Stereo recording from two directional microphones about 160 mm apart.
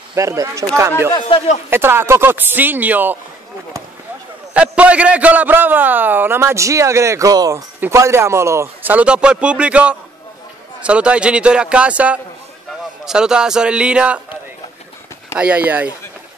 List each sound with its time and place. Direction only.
0.1 s a man's voice: 20° right (ahead or behind)
4.6 s a man's voice: 10° right (ahead or behind)
15.3 s a man's voice: 10° right (ahead or behind)